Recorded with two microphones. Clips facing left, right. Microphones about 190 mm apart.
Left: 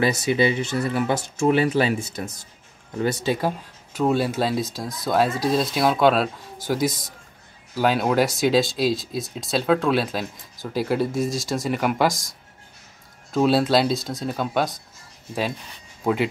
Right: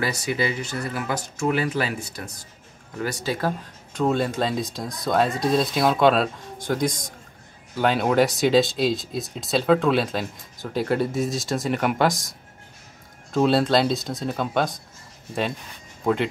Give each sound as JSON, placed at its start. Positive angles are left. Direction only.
{"t": 0.0, "sound": "speech", "side_deg": 25}
{"t": 3.3, "sound": "speech", "side_deg": 10}
{"t": 16.0, "sound": "speech", "side_deg": 5}